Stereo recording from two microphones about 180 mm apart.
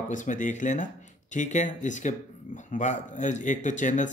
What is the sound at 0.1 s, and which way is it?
Speech, 45° left (ahead or behind).